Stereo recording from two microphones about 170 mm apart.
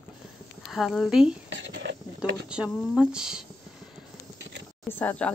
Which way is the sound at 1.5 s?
90° right.